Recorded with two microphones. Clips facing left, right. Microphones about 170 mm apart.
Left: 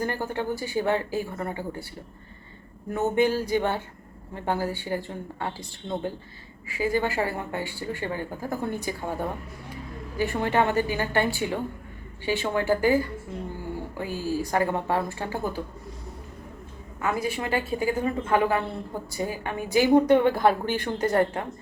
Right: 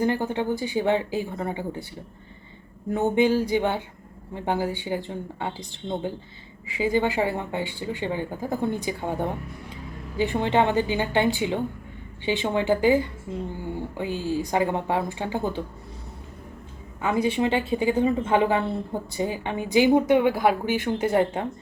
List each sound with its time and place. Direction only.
0.0 s a woman's voice: 15° right (ahead or behind)
2.9 s a woman's voice: 15° right (ahead or behind)
17.0 s a woman's voice: 20° right (ahead or behind)